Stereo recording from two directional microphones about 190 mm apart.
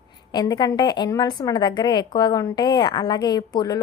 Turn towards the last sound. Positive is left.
turn(degrees=20)  # may be behind; listen again after turning